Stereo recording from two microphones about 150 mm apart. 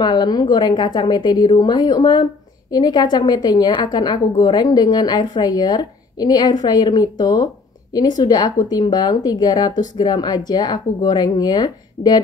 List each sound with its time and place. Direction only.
0.0 s a woman's voice: 30° left (ahead or behind)